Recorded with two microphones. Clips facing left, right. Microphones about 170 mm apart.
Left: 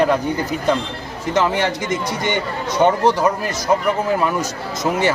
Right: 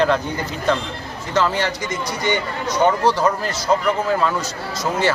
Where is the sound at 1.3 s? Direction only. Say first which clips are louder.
Left 2 dB; 20° left (ahead or behind).